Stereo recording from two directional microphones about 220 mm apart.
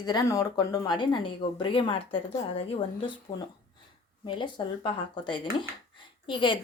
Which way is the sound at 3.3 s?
20° left (ahead or behind).